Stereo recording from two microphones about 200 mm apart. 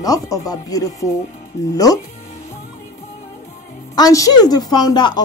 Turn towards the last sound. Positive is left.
turn(degrees=20)  # may be behind; listen again after turning